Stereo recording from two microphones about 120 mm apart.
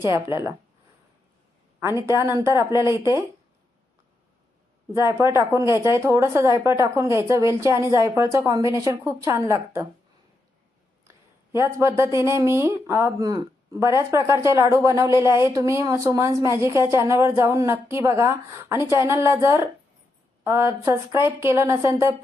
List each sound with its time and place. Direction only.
0.0 s a woman's voice: 25° right (ahead or behind)
2.0 s a woman's voice: 25° right (ahead or behind)
4.9 s a woman's voice: 20° right (ahead or behind)
11.5 s a woman's voice: 20° right (ahead or behind)